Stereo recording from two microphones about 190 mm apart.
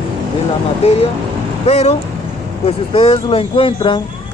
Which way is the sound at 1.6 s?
35° left (ahead or behind).